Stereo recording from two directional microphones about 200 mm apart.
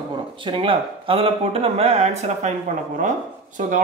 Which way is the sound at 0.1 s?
25° right (ahead or behind).